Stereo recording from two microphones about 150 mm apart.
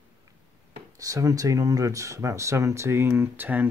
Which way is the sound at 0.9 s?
20° right (ahead or behind).